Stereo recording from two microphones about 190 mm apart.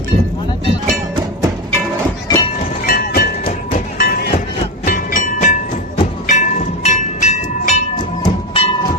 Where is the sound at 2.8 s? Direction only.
50° left (ahead or behind).